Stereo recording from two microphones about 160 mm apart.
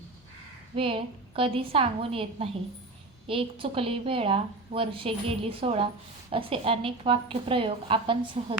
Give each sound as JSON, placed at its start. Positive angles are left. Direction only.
{"t": 0.8, "sound": "a woman's voice", "side_deg": -35}